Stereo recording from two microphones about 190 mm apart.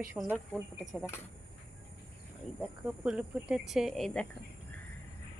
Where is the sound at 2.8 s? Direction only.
5° right (ahead or behind).